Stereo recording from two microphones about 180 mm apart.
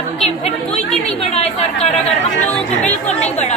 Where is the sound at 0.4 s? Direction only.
35° left (ahead or behind).